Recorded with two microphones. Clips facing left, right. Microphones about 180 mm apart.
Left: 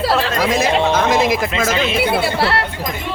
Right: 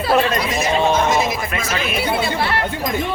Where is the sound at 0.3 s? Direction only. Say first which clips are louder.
Left 3 dB; 90° left.